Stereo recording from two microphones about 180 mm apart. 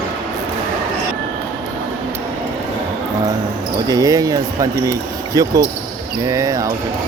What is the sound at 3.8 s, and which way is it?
Speech, 20° right (ahead or behind).